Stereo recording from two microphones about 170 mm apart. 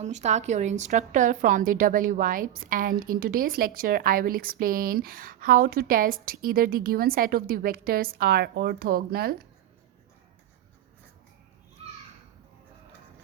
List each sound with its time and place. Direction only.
0.0 s a woman's voice: 40° right (ahead or behind); by 9.3 s 65° right (ahead or behind)